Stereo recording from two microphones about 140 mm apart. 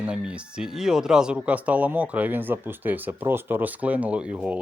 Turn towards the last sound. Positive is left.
turn(degrees=-10)  # may be behind; listen again after turning